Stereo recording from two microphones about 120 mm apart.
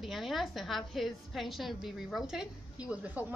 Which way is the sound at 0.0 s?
Centre (ahead or behind).